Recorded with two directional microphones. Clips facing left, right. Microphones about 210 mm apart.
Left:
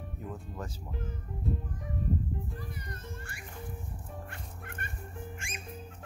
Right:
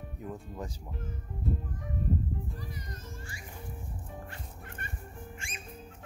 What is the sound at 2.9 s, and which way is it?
Speech, 60° left (ahead or behind).